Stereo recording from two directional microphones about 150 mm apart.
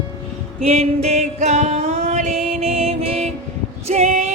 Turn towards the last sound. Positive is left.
turn(degrees=-50)  # may be behind; listen again after turning